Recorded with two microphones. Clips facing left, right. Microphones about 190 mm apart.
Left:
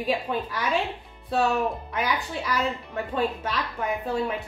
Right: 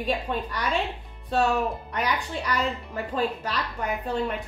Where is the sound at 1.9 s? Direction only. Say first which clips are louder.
Even; 5° left (ahead or behind).